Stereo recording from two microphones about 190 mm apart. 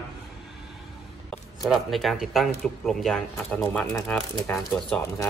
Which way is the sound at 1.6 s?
Centre (ahead or behind).